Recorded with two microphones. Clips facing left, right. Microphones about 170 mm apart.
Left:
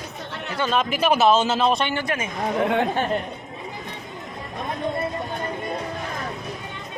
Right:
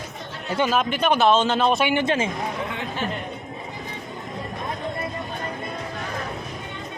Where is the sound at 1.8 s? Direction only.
20° right (ahead or behind).